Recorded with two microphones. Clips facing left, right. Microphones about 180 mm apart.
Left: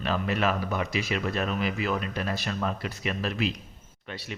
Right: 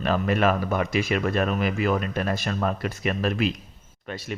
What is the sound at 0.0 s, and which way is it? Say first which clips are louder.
Speech: right 5 dB; 50° right (ahead or behind).